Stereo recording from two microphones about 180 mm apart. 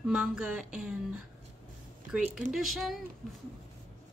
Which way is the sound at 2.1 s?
5° right (ahead or behind).